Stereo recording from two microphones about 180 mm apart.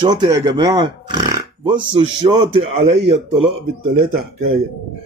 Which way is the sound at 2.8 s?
35° right (ahead or behind).